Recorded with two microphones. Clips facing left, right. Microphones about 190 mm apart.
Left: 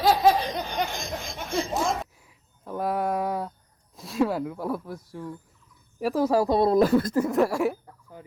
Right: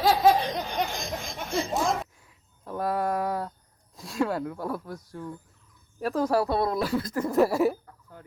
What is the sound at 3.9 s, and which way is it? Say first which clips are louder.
Speech: left 3 dB; centre (ahead or behind).